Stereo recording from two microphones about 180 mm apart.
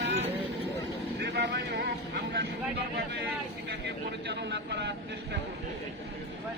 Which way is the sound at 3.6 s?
70° right (ahead or behind).